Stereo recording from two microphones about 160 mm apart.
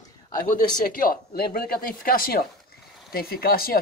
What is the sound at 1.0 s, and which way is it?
Speech, 65° left (ahead or behind).